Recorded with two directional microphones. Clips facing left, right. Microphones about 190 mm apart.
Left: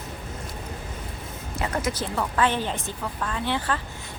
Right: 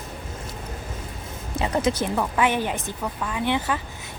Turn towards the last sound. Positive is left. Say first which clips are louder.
# right 3 dB
turn(degrees=-15)  # may be behind; listen again after turning